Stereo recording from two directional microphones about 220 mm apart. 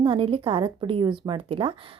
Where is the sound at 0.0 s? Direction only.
25° right (ahead or behind).